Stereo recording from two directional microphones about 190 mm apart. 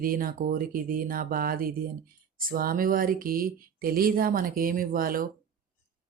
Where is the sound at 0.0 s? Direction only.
50° right (ahead or behind).